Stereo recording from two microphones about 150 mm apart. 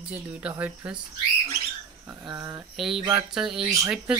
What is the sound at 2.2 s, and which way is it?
Speech, 20° right (ahead or behind).